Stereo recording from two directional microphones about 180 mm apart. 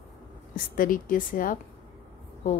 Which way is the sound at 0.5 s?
50° left (ahead or behind).